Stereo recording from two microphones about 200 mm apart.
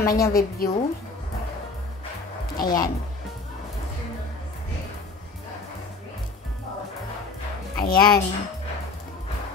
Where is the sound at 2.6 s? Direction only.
20° left (ahead or behind).